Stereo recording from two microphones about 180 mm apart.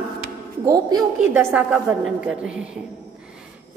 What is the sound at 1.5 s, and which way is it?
A woman's voice, 10° right (ahead or behind).